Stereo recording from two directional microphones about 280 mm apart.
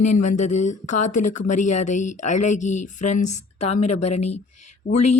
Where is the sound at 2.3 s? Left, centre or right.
Left.